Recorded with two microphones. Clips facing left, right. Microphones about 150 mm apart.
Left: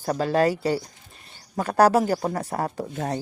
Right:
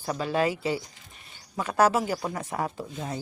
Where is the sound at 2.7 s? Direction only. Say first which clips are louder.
Left 5 dB; 70° left (ahead or behind).